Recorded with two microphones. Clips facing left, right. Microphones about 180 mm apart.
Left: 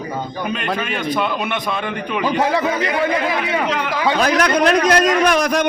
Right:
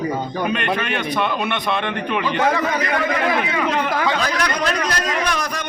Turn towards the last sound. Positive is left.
turn(degrees=90)